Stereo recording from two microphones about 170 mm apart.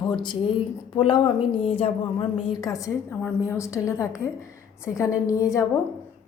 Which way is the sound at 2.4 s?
20° left (ahead or behind).